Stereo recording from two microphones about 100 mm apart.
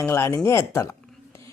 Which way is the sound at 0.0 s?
25° left (ahead or behind).